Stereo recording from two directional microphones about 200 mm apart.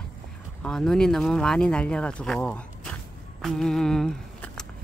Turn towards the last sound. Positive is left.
turn(degrees=5)  # may be behind; listen again after turning